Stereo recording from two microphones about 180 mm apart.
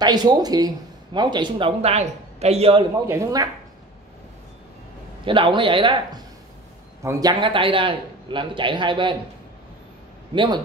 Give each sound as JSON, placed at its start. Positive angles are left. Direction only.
{"t": 0.0, "sound": "speech", "side_deg": -25}
{"t": 3.1, "sound": "speech", "side_deg": -15}
{"t": 5.2, "sound": "speech", "side_deg": -30}
{"t": 10.3, "sound": "speech", "side_deg": -25}